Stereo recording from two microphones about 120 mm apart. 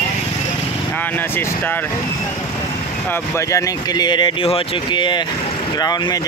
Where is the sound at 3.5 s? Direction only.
35° left (ahead or behind).